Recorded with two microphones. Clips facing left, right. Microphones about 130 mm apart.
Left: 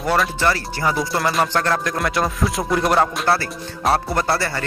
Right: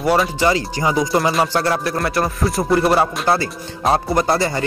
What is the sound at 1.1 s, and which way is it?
Speech, 5° right (ahead or behind).